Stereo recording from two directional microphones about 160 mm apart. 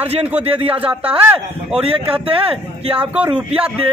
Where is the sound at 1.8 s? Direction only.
35° right (ahead or behind).